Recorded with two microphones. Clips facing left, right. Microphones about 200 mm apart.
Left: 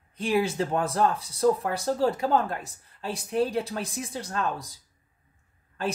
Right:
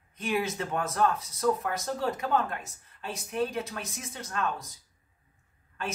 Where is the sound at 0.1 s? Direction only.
30° left (ahead or behind).